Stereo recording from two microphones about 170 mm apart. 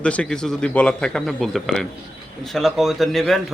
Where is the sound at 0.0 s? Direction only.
5° left (ahead or behind).